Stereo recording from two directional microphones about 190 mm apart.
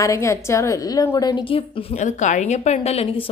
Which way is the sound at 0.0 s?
15° left (ahead or behind).